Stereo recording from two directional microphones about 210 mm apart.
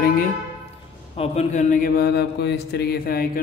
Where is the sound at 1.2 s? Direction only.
30° left (ahead or behind).